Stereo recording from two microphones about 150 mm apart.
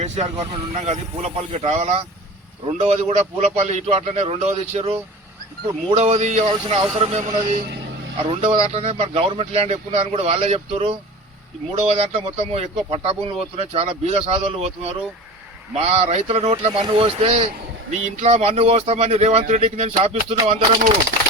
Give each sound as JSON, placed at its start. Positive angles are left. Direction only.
{"t": 0.0, "sound": "speech", "side_deg": -45}
{"t": 6.5, "sound": "speech", "side_deg": -35}